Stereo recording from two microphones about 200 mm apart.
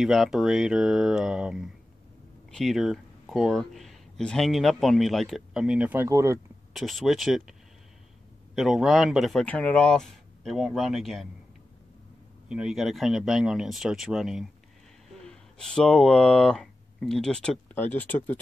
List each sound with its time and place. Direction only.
0.0 s speech: centre (ahead or behind)
6.7 s speech: centre (ahead or behind)
8.5 s speech: centre (ahead or behind)
12.4 s speech: 5° right (ahead or behind)